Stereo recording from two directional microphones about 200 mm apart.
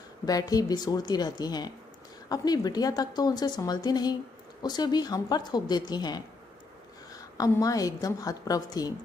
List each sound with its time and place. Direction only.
0.2 s a woman's voice: 20° left (ahead or behind)